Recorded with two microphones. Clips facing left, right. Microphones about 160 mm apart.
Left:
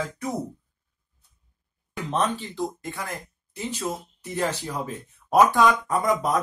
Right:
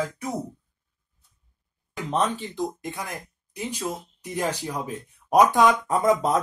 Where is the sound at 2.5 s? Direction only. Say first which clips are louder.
Right 1 dB; 15° right (ahead or behind).